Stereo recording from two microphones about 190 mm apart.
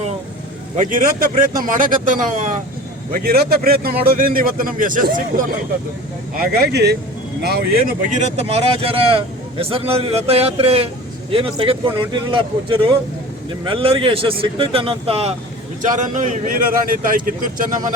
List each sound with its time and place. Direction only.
0.8 s a man's voice: 45° right (ahead or behind)
8.2 s a man's voice: 35° right (ahead or behind)